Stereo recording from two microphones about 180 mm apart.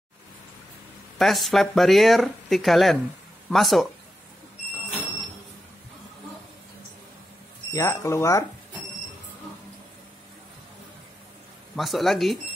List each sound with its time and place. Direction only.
1.1 s speech: centre (ahead or behind)
7.7 s speech: 15° left (ahead or behind)
11.7 s speech: centre (ahead or behind)